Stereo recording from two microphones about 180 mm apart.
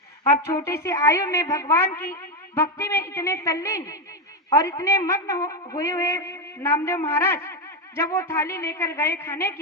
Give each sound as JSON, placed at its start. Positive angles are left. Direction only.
{"t": 0.4, "sound": "a woman's voice", "side_deg": 15}